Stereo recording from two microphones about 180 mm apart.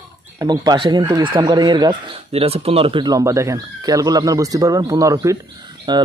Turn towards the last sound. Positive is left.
turn(degrees=-25)  # may be behind; listen again after turning